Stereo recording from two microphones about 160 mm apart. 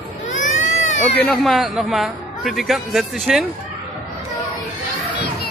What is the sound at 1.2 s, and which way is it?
A man's voice, centre (ahead or behind).